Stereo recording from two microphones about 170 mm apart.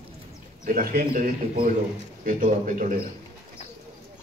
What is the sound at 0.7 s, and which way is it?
A man's voice, 55° right (ahead or behind).